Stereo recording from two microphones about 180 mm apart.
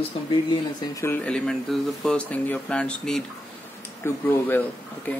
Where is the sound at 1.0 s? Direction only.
10° left (ahead or behind).